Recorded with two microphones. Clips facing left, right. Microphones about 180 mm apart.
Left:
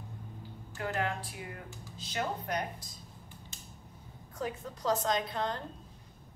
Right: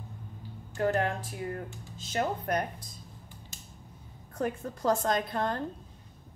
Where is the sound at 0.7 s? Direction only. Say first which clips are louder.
Right 6 dB; 40° right (ahead or behind).